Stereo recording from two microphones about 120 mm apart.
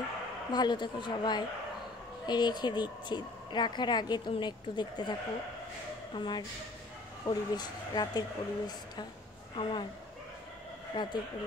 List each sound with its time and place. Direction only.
0.5 s a woman's voice: 35° left (ahead or behind)
6.1 s a woman's voice: 40° left (ahead or behind)
9.6 s speech: 45° left (ahead or behind)
10.9 s a woman's voice: 40° left (ahead or behind)